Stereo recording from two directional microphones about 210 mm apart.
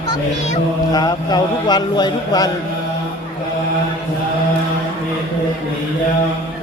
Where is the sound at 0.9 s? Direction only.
20° left (ahead or behind).